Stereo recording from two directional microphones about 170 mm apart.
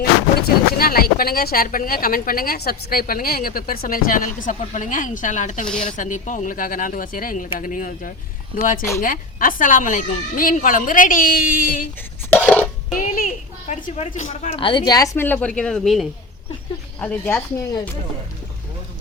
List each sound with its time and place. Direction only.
0.4 s a woman's voice: 60° left (ahead or behind)
12.3 s a sound: 5° left (ahead or behind)
13.0 s a woman's voice: 50° left (ahead or behind); by 17.4 s 10° left (ahead or behind)